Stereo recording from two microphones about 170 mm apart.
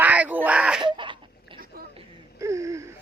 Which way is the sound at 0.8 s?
30° right (ahead or behind).